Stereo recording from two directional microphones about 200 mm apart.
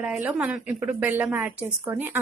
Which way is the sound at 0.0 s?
5° right (ahead or behind).